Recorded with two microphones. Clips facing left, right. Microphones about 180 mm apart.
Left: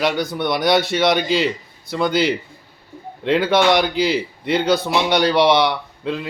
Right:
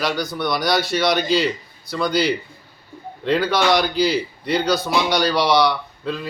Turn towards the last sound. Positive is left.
turn(degrees=25)  # may be behind; listen again after turning